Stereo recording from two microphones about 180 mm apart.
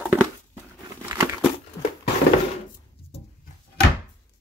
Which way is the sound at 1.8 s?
20° left (ahead or behind).